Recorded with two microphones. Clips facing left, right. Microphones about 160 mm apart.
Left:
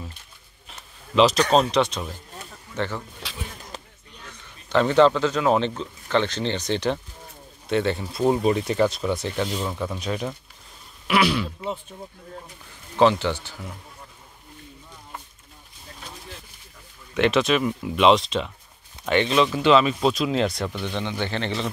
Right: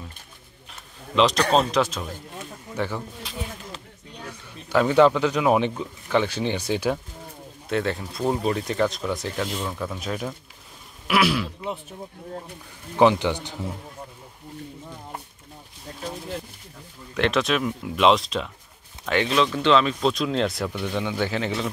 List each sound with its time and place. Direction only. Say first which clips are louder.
1.1 s a man's voice: left 2 dB; centre (ahead or behind)
3.3 s a sound: right 3 dB; 85° left
4.3 s speech: even; 10° right (ahead or behind)
12.9 s speech: right 1 dB; 15° right (ahead or behind)
17.1 s speech: left 2 dB; centre (ahead or behind)